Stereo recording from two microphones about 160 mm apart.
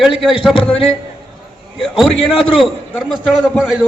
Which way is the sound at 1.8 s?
Centre (ahead or behind).